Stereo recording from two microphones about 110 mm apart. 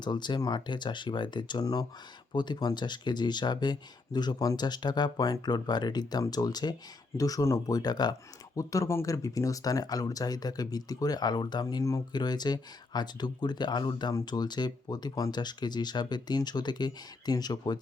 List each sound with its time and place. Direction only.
0.0 s speech: 40° left (ahead or behind)